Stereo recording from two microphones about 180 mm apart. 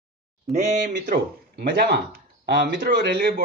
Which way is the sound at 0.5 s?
40° right (ahead or behind).